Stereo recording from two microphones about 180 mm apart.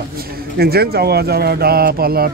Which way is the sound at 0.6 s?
60° right (ahead or behind).